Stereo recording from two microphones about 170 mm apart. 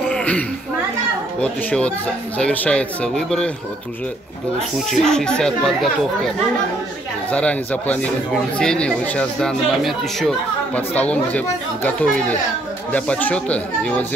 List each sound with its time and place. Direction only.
0.1 s a sound: 5° left (ahead or behind)
1.4 s speech: 5° left (ahead or behind)
4.7 s speech: 5° left (ahead or behind)
7.2 s speech: 5° left (ahead or behind)